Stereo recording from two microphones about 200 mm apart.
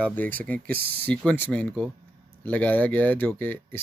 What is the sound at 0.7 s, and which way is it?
Speech, 50° right (ahead or behind).